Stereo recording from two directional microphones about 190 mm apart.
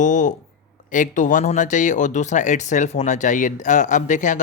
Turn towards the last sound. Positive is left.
turn(degrees=40)  # may be behind; listen again after turning